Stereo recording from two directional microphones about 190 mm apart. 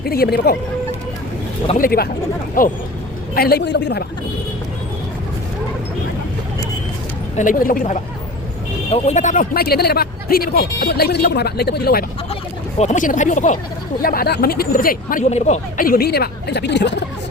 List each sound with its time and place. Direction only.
0.0 s a woman's voice: 55° left (ahead or behind)
1.8 s a woman's voice: 50° left (ahead or behind)
7.3 s speech: 45° left (ahead or behind)
12.8 s speech: 40° left (ahead or behind); by 17.0 s 65° left (ahead or behind)